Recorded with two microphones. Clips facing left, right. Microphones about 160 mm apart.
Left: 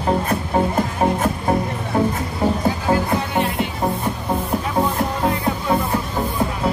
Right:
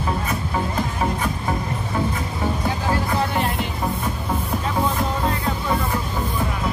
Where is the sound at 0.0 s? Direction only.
45° left (ahead or behind).